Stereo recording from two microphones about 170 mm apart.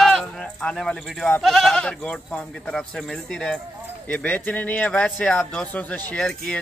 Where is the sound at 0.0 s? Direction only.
5° left (ahead or behind).